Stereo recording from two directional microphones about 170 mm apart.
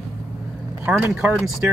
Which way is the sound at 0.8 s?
5° right (ahead or behind).